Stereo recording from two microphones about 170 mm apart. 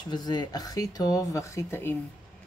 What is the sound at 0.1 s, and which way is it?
Speech, 25° left (ahead or behind).